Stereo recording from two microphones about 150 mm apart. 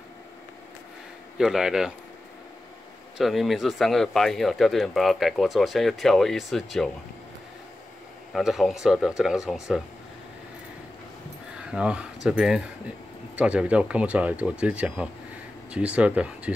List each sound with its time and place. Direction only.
1.4 s speech: 5° right (ahead or behind)
3.2 s speech: centre (ahead or behind)
8.3 s speech: centre (ahead or behind)
11.7 s speech: 5° right (ahead or behind)